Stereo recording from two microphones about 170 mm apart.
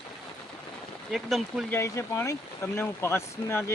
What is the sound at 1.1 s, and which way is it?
Speech, centre (ahead or behind).